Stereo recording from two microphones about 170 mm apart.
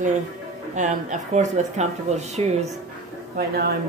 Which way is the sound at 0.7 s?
45° right (ahead or behind).